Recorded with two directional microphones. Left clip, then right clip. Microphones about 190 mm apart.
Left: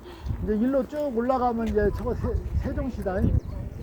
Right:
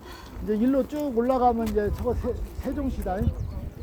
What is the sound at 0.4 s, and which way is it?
Speech, 35° left (ahead or behind).